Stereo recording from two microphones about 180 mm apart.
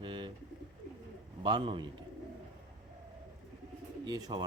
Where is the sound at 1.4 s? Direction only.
25° right (ahead or behind).